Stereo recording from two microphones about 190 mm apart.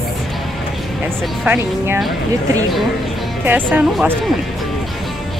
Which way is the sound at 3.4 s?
10° right (ahead or behind).